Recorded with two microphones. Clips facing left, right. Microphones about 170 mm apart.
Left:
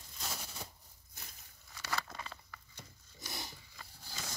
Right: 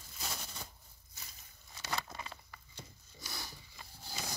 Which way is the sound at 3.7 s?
15° right (ahead or behind).